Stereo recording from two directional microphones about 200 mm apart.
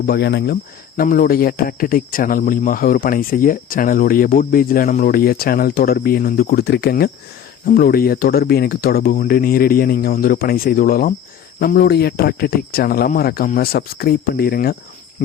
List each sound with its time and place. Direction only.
0.0 s speech: 55° left (ahead or behind)